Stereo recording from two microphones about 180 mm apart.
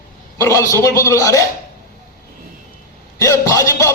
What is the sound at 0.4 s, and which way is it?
Speech, 15° left (ahead or behind).